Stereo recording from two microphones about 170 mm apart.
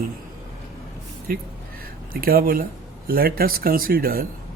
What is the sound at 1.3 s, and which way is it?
Speech, 65° right (ahead or behind).